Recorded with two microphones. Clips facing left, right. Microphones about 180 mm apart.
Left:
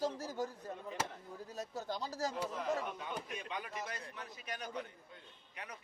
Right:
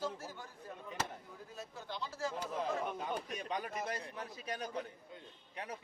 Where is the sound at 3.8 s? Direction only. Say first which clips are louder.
Right 4 dB; 30° right (ahead or behind).